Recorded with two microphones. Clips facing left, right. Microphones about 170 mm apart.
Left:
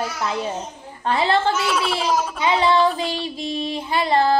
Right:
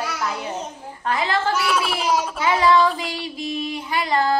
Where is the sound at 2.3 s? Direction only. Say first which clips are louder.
Right 1 dB; 25° left (ahead or behind).